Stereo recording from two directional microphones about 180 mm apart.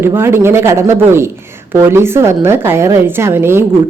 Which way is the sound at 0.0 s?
15° right (ahead or behind).